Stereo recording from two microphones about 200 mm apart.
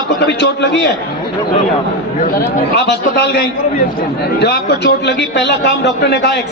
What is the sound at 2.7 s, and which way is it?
A man's voice, 60° left (ahead or behind).